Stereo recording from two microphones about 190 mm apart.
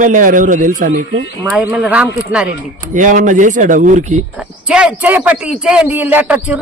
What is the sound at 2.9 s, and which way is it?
Speech, 45° right (ahead or behind).